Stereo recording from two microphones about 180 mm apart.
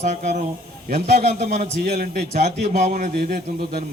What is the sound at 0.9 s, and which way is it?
A man's voice, 55° right (ahead or behind).